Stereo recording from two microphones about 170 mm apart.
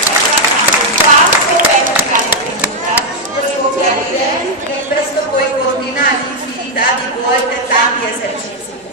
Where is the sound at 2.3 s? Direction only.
10° right (ahead or behind).